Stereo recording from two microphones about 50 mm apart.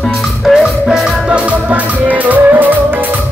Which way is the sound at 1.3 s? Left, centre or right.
Right.